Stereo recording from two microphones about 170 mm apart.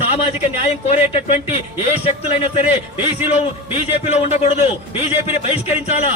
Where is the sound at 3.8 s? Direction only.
40° left (ahead or behind).